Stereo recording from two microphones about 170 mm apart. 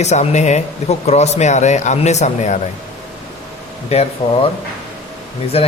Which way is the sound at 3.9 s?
40° left (ahead or behind).